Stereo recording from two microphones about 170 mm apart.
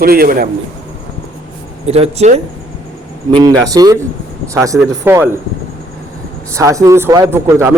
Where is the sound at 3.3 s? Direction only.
25° right (ahead or behind).